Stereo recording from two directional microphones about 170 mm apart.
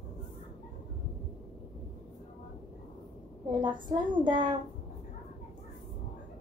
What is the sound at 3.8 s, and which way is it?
Speech, 30° right (ahead or behind).